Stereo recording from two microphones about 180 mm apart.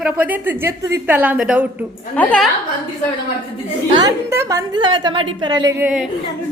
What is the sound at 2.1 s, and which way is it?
Speech, 5° left (ahead or behind).